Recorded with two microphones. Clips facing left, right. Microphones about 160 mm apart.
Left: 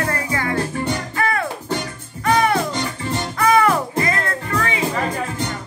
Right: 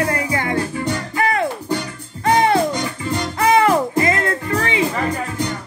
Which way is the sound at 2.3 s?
25° right (ahead or behind).